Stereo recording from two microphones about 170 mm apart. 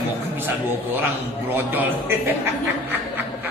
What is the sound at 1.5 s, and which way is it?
Speech, 10° right (ahead or behind).